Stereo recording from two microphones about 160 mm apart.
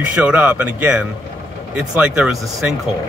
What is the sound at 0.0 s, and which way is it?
Speech, 10° right (ahead or behind).